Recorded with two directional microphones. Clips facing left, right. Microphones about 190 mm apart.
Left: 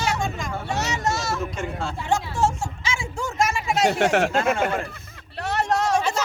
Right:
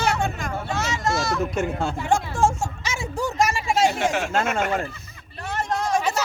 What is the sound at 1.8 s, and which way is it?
Speech, 50° right (ahead or behind).